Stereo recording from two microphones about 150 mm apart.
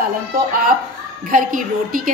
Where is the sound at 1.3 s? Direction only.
65° right (ahead or behind).